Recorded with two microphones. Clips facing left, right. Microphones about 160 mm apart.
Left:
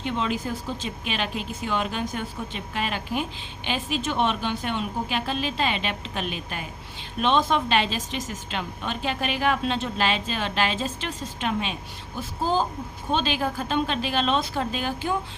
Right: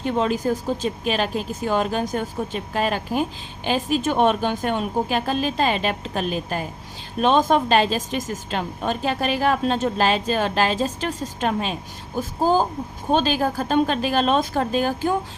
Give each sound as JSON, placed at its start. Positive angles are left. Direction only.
{"t": 0.0, "sound": "a woman's voice", "side_deg": -40}